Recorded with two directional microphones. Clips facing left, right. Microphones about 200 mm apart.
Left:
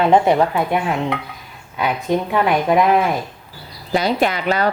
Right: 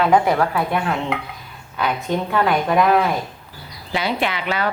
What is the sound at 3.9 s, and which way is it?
Speech, 40° left (ahead or behind).